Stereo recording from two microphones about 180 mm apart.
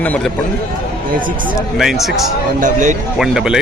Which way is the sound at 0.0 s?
10° left (ahead or behind).